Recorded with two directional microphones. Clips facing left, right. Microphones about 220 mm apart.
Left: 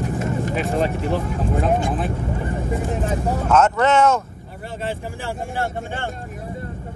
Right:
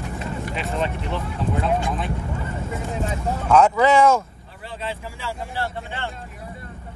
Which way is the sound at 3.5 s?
5° left (ahead or behind).